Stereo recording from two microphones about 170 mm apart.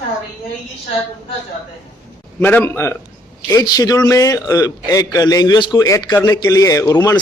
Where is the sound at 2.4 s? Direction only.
10° left (ahead or behind).